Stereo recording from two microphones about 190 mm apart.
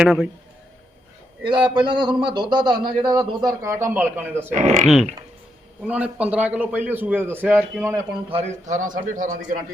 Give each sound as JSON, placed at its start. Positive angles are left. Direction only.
{"t": 0.0, "sound": "a sound", "side_deg": -5}
{"t": 1.5, "sound": "a man's voice", "side_deg": -25}
{"t": 4.5, "sound": "speech", "side_deg": -40}
{"t": 4.8, "sound": "a sound", "side_deg": 0}
{"t": 5.9, "sound": "a man's voice", "side_deg": -5}
{"t": 8.3, "sound": "a man's voice", "side_deg": -35}